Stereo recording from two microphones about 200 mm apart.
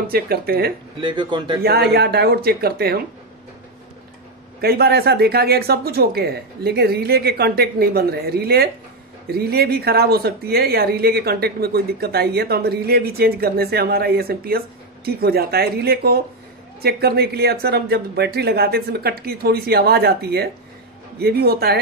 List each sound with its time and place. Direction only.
0.0 s speech: 50° right (ahead or behind)
1.0 s a man's voice: 25° right (ahead or behind)
1.6 s speech: 55° right (ahead or behind)
4.6 s speech: 50° right (ahead or behind)